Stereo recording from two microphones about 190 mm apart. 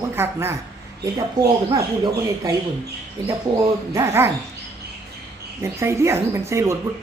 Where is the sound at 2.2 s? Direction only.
20° right (ahead or behind).